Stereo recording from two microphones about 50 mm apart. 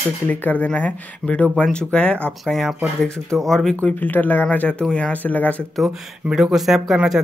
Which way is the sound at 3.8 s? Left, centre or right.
Left.